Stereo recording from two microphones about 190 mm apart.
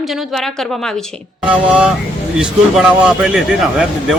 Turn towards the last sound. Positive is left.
turn(degrees=-5)  # may be behind; listen again after turning